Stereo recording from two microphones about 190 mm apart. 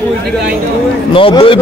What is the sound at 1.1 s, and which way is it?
Speech, 25° left (ahead or behind).